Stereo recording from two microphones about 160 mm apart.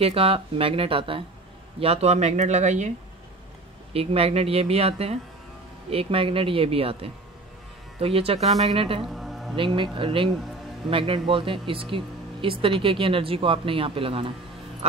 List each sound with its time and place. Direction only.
0.0 s speech: 35° right (ahead or behind)
3.9 s speech: 40° right (ahead or behind)
9.0 s music: centre (ahead or behind)
9.6 s speech: 35° right (ahead or behind)